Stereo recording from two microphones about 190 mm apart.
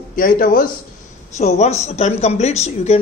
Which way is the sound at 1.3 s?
35° left (ahead or behind).